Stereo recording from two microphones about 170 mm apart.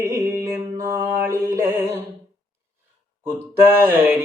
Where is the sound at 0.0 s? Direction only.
15° right (ahead or behind).